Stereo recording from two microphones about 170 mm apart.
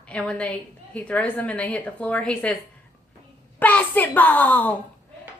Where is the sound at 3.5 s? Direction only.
10° left (ahead or behind).